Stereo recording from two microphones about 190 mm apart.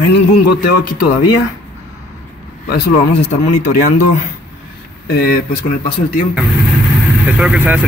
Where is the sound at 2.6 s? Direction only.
55° left (ahead or behind).